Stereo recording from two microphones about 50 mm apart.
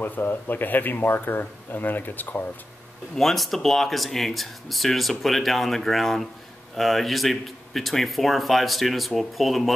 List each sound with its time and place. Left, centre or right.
0.0 s speech: left
3.2 s speech: centre